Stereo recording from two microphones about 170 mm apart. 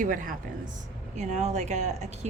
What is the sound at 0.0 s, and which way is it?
Speech, 50° right (ahead or behind).